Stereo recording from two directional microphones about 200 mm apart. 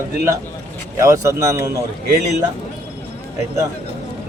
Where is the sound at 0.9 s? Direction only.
15° right (ahead or behind).